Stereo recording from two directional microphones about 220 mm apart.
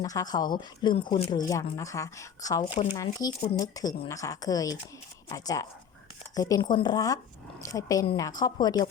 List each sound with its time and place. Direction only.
0.0 s speech: 15° left (ahead or behind)